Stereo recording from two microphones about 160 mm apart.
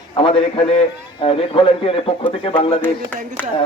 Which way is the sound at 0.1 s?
35° left (ahead or behind).